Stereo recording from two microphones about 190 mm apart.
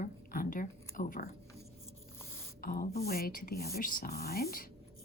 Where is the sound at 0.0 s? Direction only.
45° left (ahead or behind).